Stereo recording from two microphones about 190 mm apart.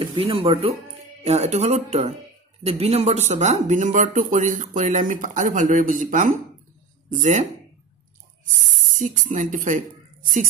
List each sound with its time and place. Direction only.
0.0 s speech: 25° right (ahead or behind)
8.9 s speech: 45° right (ahead or behind)